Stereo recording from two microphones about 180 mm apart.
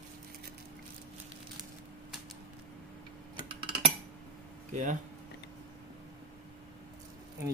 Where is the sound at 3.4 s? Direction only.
30° right (ahead or behind).